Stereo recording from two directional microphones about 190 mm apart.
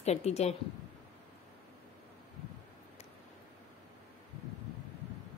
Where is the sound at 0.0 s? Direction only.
35° left (ahead or behind).